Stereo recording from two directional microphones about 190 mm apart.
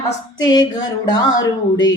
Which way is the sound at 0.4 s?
20° left (ahead or behind).